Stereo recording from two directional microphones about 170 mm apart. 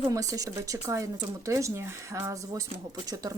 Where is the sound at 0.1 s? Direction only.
20° right (ahead or behind).